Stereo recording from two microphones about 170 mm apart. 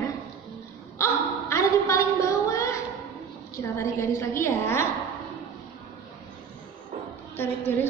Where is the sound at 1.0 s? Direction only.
15° left (ahead or behind).